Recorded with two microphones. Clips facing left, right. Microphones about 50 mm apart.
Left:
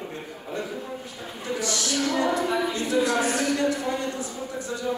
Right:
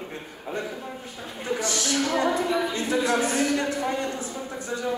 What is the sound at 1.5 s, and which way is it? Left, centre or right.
Speech, right.